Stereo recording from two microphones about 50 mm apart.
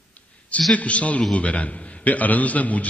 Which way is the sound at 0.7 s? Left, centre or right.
Left.